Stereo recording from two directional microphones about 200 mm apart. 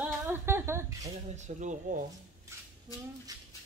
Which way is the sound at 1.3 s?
35° right (ahead or behind).